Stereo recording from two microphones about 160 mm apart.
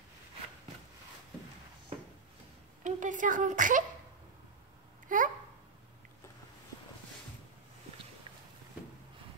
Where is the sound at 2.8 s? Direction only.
50° right (ahead or behind).